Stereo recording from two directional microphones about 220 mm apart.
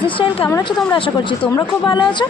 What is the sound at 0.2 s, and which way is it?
Speech, 25° left (ahead or behind).